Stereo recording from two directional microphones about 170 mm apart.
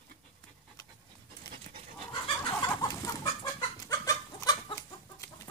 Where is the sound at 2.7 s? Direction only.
20° left (ahead or behind).